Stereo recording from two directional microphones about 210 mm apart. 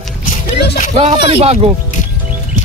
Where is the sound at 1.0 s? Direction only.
25° right (ahead or behind).